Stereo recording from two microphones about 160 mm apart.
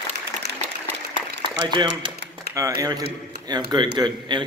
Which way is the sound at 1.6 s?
30° right (ahead or behind).